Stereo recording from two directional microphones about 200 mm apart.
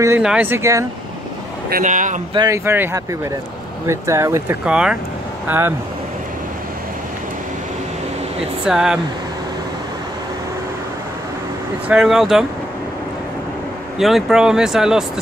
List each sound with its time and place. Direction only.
0.2 s speech: 5° right (ahead or behind)
1.7 s speech: 40° right (ahead or behind)
2.3 s speech: 15° right (ahead or behind)
8.6 s speech: 5° right (ahead or behind)
11.9 s speech: 5° right (ahead or behind)
13.9 s speech: centre (ahead or behind)